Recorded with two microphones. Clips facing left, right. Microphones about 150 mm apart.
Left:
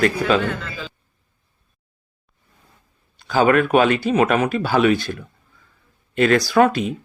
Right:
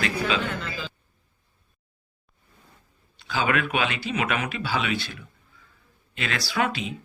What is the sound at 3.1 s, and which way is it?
Speech, 45° left (ahead or behind).